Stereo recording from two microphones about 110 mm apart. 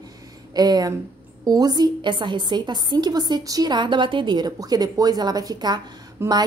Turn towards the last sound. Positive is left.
turn(degrees=-25)  # may be behind; listen again after turning